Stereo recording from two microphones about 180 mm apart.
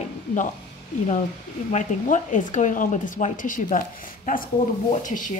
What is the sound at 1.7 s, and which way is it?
A woman's voice, 45° left (ahead or behind).